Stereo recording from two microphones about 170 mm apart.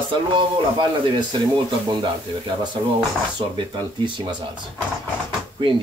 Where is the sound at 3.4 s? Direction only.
25° right (ahead or behind).